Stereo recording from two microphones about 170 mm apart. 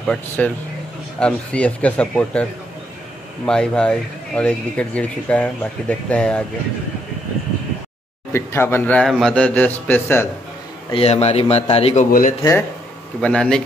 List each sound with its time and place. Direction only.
0.4 s speech: 5° left (ahead or behind)
3.4 s speech: 5° left (ahead or behind)
8.3 s speech: 15° left (ahead or behind)
10.9 s a man's voice: 35° left (ahead or behind)
13.2 s speech: 5° left (ahead or behind)